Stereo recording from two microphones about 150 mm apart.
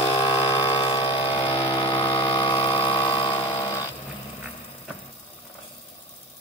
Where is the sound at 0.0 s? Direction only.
30° left (ahead or behind).